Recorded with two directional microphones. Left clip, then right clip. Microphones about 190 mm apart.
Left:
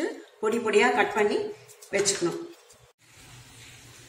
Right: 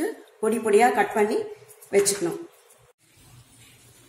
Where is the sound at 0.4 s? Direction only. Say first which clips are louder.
Right 3 dB; 50° right (ahead or behind).